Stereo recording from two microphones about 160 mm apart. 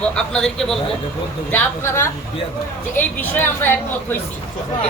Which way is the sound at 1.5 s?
15° left (ahead or behind).